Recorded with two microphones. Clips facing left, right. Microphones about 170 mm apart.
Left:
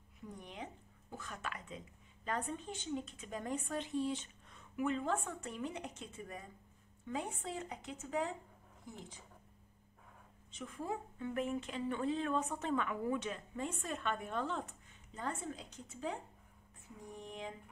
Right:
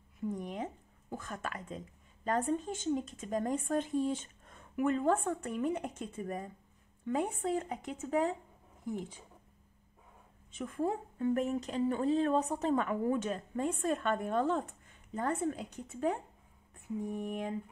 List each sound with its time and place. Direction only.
0.3 s speech: 45° right (ahead or behind)
10.5 s speech: 50° right (ahead or behind)